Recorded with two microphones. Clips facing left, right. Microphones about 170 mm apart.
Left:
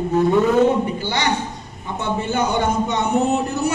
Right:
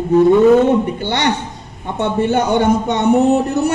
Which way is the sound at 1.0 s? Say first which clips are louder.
Right 4 dB; 65° right (ahead or behind).